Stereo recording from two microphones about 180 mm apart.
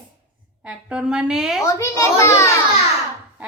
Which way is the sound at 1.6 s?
15° left (ahead or behind).